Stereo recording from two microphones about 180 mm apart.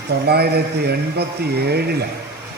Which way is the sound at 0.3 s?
65° right (ahead or behind).